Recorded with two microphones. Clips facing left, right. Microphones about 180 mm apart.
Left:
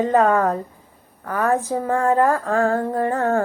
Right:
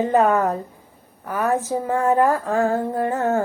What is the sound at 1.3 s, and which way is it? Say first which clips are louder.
Speech: left 1 dB; 20° right (ahead or behind).